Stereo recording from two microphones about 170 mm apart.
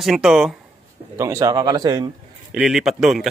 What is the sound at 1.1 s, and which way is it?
Speech, 15° right (ahead or behind).